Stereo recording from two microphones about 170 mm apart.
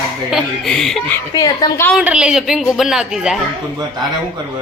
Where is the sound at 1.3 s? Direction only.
20° left (ahead or behind).